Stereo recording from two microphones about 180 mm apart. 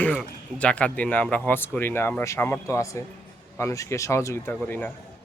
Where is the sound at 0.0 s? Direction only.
5° left (ahead or behind).